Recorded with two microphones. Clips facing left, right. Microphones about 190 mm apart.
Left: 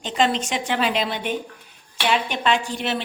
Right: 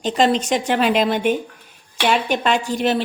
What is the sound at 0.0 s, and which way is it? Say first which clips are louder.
A woman's voice: right 4 dB; 40° right (ahead or behind).